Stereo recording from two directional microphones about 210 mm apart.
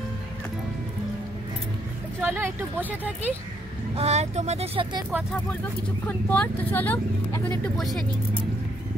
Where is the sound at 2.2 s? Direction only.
10° right (ahead or behind).